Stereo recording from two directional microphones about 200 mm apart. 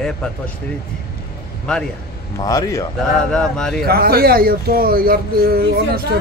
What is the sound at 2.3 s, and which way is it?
Speech, 15° left (ahead or behind).